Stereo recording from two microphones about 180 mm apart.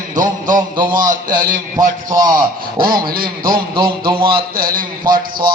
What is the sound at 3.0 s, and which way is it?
Speech, 55° right (ahead or behind).